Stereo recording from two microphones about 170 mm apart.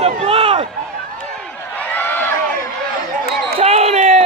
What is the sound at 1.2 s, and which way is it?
Run, 10° left (ahead or behind).